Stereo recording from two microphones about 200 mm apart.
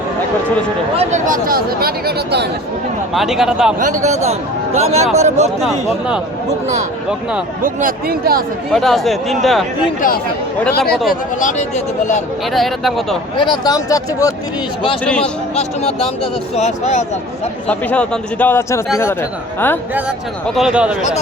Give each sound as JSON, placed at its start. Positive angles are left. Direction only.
{"t": 0.9, "sound": "speech", "side_deg": -35}
{"t": 3.1, "sound": "speech", "side_deg": 0}
{"t": 3.8, "sound": "a man's voice", "side_deg": -40}
{"t": 7.6, "sound": "speech", "side_deg": -45}
{"t": 8.7, "sound": "speech", "side_deg": 0}
{"t": 11.1, "sound": "speech", "side_deg": 40}
{"t": 12.5, "sound": "speech", "side_deg": 0}
{"t": 13.3, "sound": "speech", "side_deg": 25}
{"t": 15.0, "sound": "speech", "side_deg": 5}
{"t": 15.5, "sound": "speech", "side_deg": 30}
{"t": 17.7, "sound": "a man's voice", "side_deg": 5}
{"t": 19.9, "sound": "speech", "side_deg": -10}